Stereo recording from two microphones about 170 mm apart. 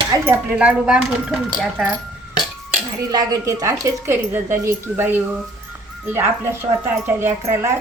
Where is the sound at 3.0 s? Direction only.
20° right (ahead or behind).